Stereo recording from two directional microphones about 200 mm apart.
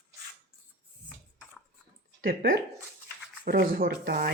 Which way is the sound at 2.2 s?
50° right (ahead or behind).